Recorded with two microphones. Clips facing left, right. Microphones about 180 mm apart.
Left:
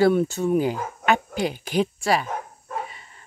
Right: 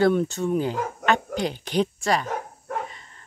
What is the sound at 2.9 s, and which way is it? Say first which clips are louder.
Dog: even; 10° left (ahead or behind).